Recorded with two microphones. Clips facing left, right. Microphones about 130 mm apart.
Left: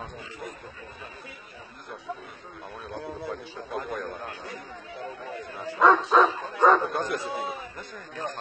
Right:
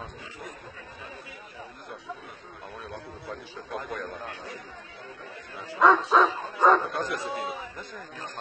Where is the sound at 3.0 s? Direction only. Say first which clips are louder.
Left 7 dB; 85° left.